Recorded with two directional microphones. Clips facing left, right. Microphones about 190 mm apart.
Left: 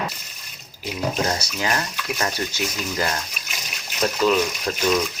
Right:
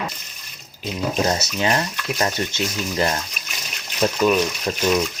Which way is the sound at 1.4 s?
25° right (ahead or behind).